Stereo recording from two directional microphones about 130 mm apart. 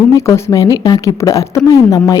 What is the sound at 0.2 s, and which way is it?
A woman's voice, 20° left (ahead or behind).